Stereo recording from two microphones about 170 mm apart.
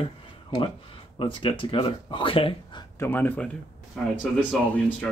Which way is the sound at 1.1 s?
30° left (ahead or behind).